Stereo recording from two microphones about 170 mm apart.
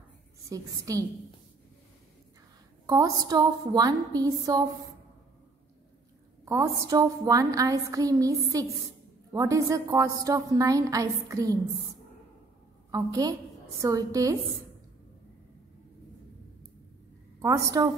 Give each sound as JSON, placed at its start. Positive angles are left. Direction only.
{"t": 0.5, "sound": "a woman's voice", "side_deg": -20}
{"t": 2.9, "sound": "a woman's voice", "side_deg": -25}
{"t": 6.4, "sound": "a woman's voice", "side_deg": -20}
{"t": 12.9, "sound": "a woman's voice", "side_deg": -20}
{"t": 17.4, "sound": "a woman's voice", "side_deg": -20}